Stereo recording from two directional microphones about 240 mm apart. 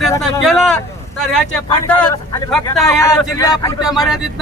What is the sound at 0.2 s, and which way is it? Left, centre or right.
Speech, centre.